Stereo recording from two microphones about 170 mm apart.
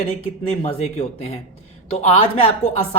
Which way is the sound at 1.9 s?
40° left (ahead or behind).